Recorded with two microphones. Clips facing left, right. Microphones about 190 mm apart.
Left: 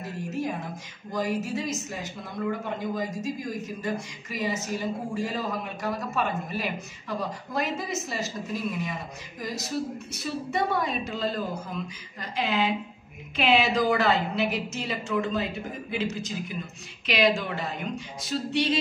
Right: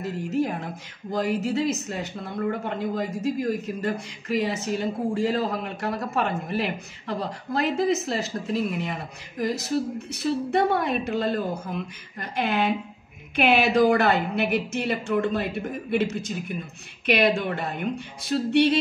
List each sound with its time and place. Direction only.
0.0 s a man's voice: 65° right (ahead or behind)